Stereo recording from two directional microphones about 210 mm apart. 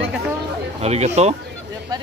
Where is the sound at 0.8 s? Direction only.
30° right (ahead or behind).